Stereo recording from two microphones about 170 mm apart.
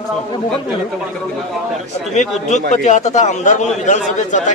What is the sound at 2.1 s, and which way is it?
A man's voice, 45° left (ahead or behind).